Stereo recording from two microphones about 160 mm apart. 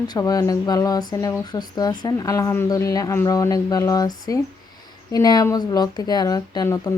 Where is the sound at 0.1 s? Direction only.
20° left (ahead or behind).